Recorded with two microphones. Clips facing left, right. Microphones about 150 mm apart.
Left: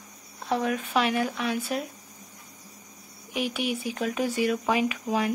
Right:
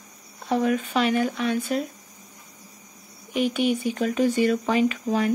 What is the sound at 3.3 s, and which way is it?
Speech, 5° left (ahead or behind).